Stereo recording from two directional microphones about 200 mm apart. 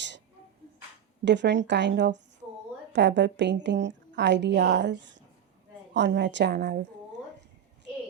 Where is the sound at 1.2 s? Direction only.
60° right (ahead or behind).